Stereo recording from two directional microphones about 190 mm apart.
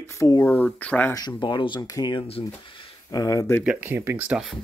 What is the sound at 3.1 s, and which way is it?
Speech, 15° left (ahead or behind).